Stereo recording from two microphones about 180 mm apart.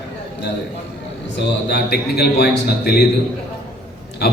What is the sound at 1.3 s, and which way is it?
A man's voice, 70° left (ahead or behind).